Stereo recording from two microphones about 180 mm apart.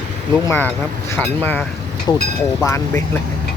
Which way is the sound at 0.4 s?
10° left (ahead or behind).